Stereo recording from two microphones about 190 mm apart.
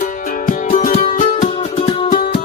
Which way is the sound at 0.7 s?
40° left (ahead or behind).